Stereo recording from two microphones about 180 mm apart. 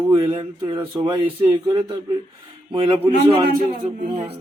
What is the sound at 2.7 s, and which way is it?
A man's voice, 30° right (ahead or behind).